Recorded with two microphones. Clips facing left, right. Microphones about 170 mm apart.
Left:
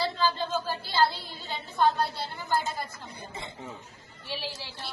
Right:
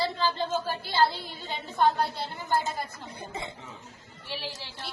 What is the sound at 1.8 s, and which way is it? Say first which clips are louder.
Speech: even; 20° right (ahead or behind).